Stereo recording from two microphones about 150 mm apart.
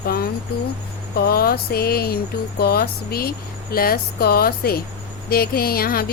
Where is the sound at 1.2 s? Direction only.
90° left.